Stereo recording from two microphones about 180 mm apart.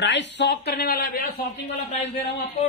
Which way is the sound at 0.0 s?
80° left.